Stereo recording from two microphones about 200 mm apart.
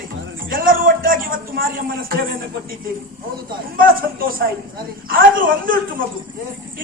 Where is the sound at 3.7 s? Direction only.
45° right (ahead or behind).